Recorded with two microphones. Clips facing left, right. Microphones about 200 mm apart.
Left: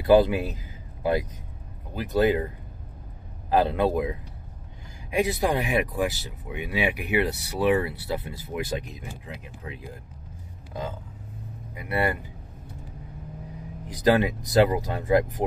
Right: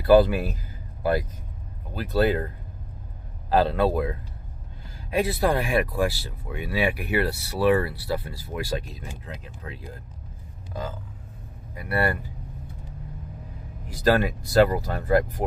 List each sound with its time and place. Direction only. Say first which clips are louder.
0.0 s speech: right 1 dB; 20° left (ahead or behind)
2.0 s speech: left 1 dB; 15° left (ahead or behind)
11.7 s speech: right 1 dB; 20° left (ahead or behind)
13.8 s speech: even; 20° left (ahead or behind)